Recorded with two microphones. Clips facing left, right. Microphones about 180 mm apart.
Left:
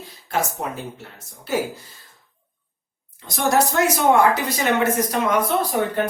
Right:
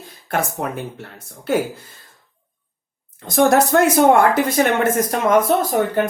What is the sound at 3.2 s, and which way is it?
Speech, 50° right (ahead or behind).